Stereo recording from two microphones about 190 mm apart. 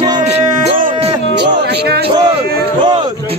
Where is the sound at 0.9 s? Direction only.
25° right (ahead or behind).